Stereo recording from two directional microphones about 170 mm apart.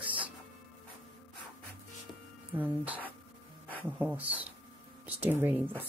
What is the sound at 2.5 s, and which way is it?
Speech, 10° right (ahead or behind).